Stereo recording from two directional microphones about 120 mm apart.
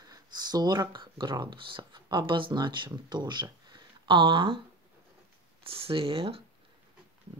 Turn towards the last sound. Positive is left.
turn(degrees=-50)  # may be behind; listen again after turning